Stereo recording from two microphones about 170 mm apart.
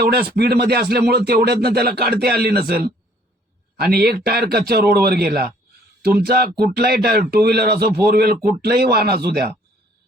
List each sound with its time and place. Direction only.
0.0 s a man's voice: 65° right (ahead or behind)